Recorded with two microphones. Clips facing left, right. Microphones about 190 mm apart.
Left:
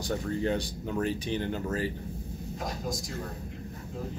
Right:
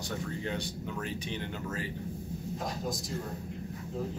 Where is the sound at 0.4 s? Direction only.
35° left (ahead or behind).